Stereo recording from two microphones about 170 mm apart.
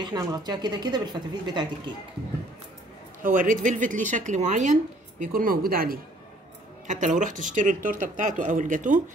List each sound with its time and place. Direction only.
0.0 s a woman's voice: 25° right (ahead or behind)
3.2 s speech: 50° right (ahead or behind)
5.2 s a woman's voice: 55° right (ahead or behind)
6.9 s speech: 45° right (ahead or behind)